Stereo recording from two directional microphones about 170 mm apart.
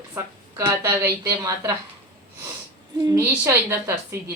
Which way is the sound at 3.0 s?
20° right (ahead or behind).